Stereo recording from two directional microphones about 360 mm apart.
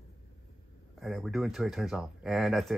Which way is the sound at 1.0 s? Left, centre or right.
Centre.